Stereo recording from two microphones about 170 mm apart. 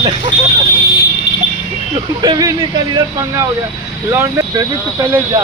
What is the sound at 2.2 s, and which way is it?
Speech, 25° right (ahead or behind).